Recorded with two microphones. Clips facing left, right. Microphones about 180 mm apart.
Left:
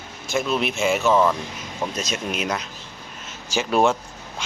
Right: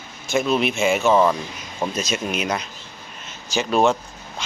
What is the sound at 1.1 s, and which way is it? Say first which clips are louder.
Speech: right 2 dB; 15° right (ahead or behind).